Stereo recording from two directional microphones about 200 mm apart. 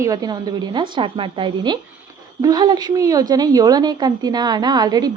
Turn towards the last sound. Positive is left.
turn(degrees=-20)  # may be behind; listen again after turning